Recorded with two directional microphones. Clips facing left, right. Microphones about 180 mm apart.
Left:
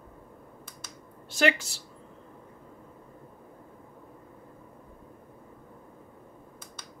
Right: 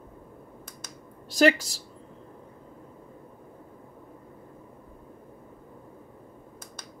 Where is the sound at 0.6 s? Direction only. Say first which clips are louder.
Right 2 dB; 40° right (ahead or behind).